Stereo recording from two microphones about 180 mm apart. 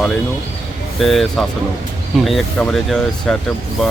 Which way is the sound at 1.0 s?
Centre (ahead or behind).